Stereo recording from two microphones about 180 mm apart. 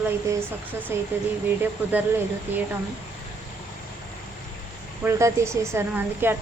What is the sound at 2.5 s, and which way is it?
Speech, 10° right (ahead or behind).